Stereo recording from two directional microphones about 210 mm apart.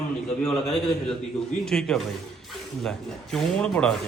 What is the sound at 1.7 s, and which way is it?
Speech, 5° left (ahead or behind).